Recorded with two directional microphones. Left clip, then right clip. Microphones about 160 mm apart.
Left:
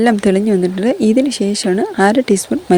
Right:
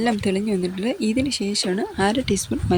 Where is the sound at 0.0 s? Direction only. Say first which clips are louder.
Left 9 dB; 45° left (ahead or behind).